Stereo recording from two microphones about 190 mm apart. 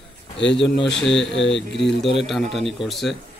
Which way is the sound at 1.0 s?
Centre (ahead or behind).